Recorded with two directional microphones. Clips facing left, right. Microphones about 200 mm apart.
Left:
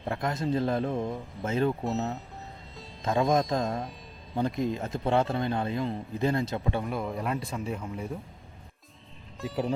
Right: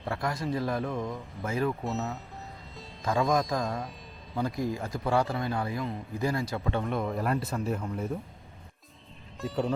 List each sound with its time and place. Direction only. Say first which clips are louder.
0.0 s speech: left 2 dB; 20° left (ahead or behind)
3.0 s speech: left 2 dB; 20° left (ahead or behind)
6.9 s speech: right 2 dB; centre (ahead or behind)
9.4 s speech: right 1 dB; centre (ahead or behind)